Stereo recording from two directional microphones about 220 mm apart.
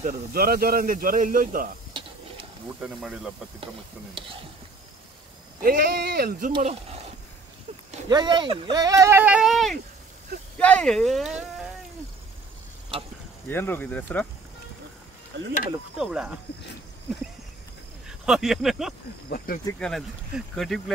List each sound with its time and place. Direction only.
0.0 s a man's voice: 40° right (ahead or behind)
2.8 s speech: 5° right (ahead or behind)
5.6 s speech: 40° right (ahead or behind)
6.5 s speech: 25° right (ahead or behind)
8.1 s speech: 20° right (ahead or behind); by 11.6 s centre (ahead or behind)
13.5 s speech: 10° left (ahead or behind)
16.0 s speech: 5° right (ahead or behind)
18.0 s speech: centre (ahead or behind)
19.2 s speech: 40° left (ahead or behind)
19.8 s speech: centre (ahead or behind)